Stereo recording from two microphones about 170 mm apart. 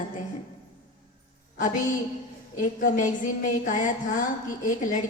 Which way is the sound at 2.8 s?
50° left (ahead or behind).